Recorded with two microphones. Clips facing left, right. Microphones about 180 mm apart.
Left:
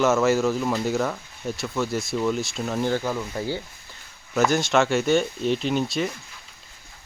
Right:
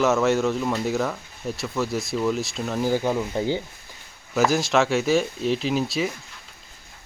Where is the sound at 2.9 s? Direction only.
20° right (ahead or behind).